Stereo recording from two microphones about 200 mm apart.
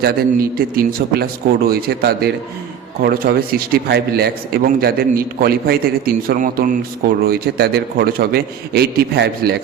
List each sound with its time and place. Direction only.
0.0 s a man's voice: 45° right (ahead or behind)